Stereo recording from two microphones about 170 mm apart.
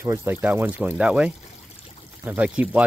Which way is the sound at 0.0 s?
15° right (ahead or behind).